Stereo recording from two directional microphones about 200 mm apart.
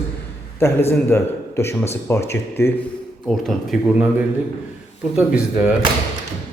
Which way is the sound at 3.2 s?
Centre (ahead or behind).